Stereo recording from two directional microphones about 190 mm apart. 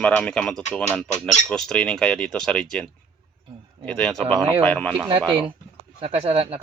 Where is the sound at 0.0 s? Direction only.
5° left (ahead or behind).